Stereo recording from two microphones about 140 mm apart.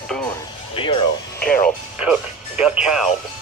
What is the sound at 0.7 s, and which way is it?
Speech, 40° left (ahead or behind).